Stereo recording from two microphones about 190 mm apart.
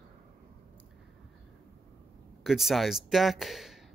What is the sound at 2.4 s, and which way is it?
Speech, centre (ahead or behind).